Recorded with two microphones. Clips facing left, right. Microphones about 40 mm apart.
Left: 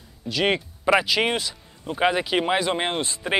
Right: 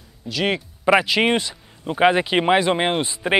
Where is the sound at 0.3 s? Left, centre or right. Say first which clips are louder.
Even; centre.